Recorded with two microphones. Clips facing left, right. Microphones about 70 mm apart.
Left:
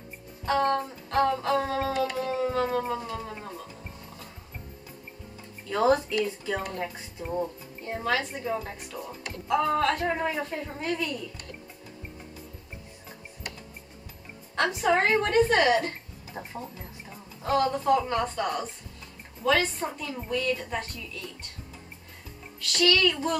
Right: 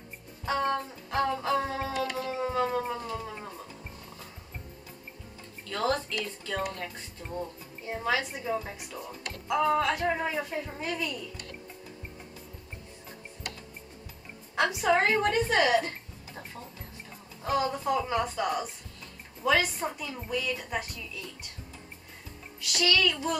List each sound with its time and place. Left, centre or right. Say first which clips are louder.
0.5 s music: left 4 dB; centre
5.7 s speech: left 6 dB; centre
7.8 s music: left 1 dB; centre
14.5 s speech: left 1 dB; centre
14.9 s music: left 1 dB; centre
17.4 s music: left 3 dB; centre
19.4 s speech: left 1 dB; centre
22.6 s music: left 3 dB; centre